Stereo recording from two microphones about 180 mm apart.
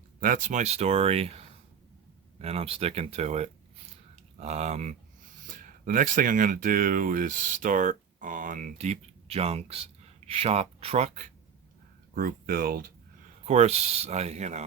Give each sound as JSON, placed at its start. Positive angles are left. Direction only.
{"t": 0.2, "sound": "speech", "side_deg": -45}
{"t": 12.1, "sound": "speech", "side_deg": -50}
{"t": 13.4, "sound": "speech", "side_deg": -35}